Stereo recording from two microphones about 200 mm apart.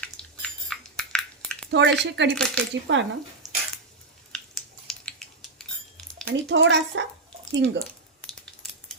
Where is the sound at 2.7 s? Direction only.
65° right (ahead or behind).